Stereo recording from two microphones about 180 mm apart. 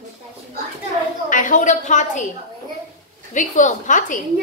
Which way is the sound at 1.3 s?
45° left (ahead or behind).